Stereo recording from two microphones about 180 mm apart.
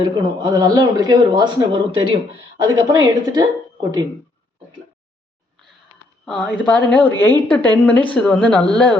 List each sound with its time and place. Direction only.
0.0 s speech: 25° right (ahead or behind)
6.2 s speech: centre (ahead or behind)